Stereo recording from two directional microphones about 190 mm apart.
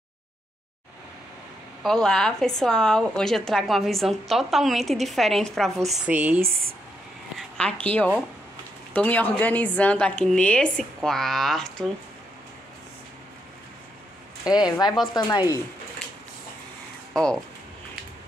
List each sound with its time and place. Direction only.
1.8 s a woman's voice: 5° left (ahead or behind)
7.3 s a sound: 5° left (ahead or behind)
7.8 s a woman's voice: 10° left (ahead or behind)
14.5 s speech: 20° left (ahead or behind)
17.1 s speech: 5° left (ahead or behind)